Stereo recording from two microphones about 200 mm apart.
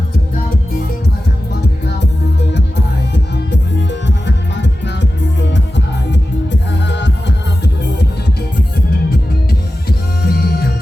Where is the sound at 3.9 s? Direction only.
60° left (ahead or behind).